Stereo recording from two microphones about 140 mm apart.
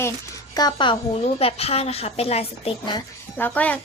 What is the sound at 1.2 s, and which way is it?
A woman's voice, 45° left (ahead or behind).